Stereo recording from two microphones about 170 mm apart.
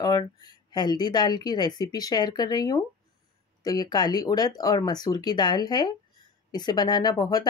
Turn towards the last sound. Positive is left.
turn(degrees=20)  # may be behind; listen again after turning